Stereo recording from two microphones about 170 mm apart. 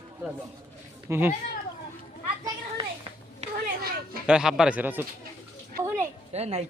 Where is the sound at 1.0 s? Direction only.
15° right (ahead or behind).